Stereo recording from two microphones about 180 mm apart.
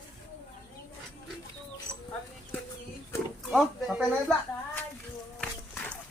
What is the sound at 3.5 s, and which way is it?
Speech, centre (ahead or behind).